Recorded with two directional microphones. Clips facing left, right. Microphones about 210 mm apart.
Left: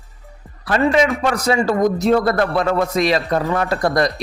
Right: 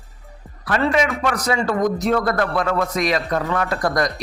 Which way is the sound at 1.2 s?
30° left (ahead or behind).